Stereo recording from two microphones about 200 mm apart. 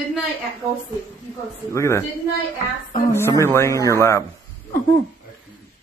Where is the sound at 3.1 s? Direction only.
15° left (ahead or behind).